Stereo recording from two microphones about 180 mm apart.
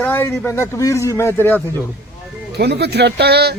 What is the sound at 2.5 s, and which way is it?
A man's voice, 65° right (ahead or behind).